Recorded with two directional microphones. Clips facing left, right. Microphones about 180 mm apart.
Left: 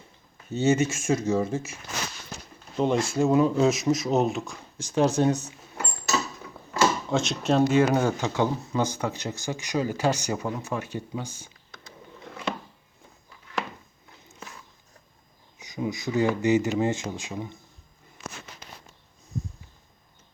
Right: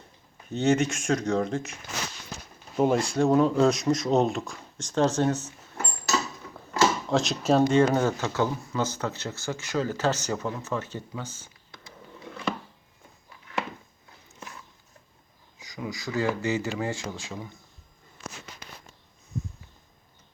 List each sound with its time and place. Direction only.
0.5 s speech: 5° left (ahead or behind)
2.7 s speech: 5° right (ahead or behind); by 5.8 s 15° left (ahead or behind)
7.1 s speech: centre (ahead or behind)
15.5 s speech: 20° left (ahead or behind)